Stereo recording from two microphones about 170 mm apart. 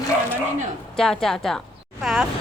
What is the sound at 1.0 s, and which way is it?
A woman's voice, 5° left (ahead or behind).